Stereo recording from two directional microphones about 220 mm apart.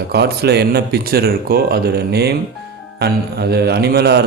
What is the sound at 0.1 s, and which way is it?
Speech, 45° right (ahead or behind).